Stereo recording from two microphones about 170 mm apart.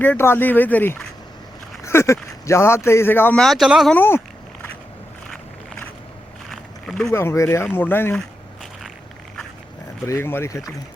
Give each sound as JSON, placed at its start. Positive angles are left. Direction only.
{"t": 0.0, "sound": "speech", "side_deg": 10}
{"t": 3.9, "sound": "speech", "side_deg": 15}
{"t": 6.5, "sound": "a sound", "side_deg": 5}
{"t": 7.1, "sound": "speech", "side_deg": 15}
{"t": 10.1, "sound": "speech", "side_deg": 15}